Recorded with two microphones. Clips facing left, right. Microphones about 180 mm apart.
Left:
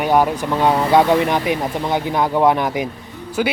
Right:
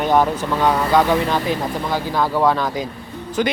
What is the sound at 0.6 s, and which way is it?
Speech, 20° left (ahead or behind).